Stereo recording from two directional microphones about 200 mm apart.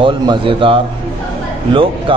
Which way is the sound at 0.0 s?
25° right (ahead or behind).